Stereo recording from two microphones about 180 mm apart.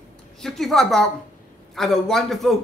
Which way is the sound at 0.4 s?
Centre (ahead or behind).